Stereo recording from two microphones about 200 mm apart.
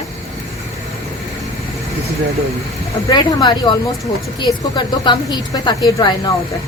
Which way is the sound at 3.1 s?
20° left (ahead or behind).